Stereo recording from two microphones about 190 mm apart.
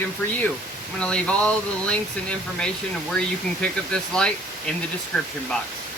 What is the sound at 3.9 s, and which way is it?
Speech, 5° left (ahead or behind).